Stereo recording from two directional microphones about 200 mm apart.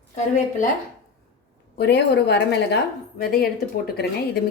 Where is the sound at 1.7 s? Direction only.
55° left (ahead or behind).